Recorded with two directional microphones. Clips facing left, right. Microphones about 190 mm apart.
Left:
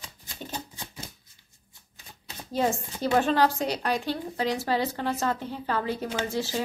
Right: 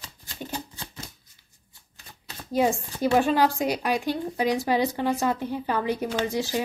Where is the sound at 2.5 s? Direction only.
15° right (ahead or behind).